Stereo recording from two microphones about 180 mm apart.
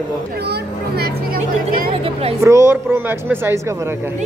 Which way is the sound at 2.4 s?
15° right (ahead or behind).